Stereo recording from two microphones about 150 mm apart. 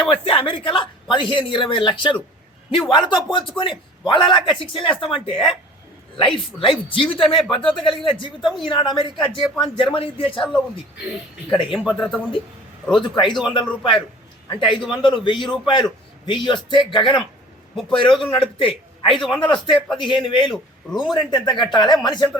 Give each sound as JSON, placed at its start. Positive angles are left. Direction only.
{"t": 0.1, "sound": "a man's voice", "side_deg": 35}
{"t": 11.5, "sound": "a man's voice", "side_deg": 35}
{"t": 11.8, "sound": "speech", "side_deg": -5}
{"t": 13.0, "sound": "a man's voice", "side_deg": 30}